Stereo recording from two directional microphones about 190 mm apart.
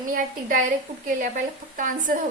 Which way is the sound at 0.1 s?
45° right (ahead or behind).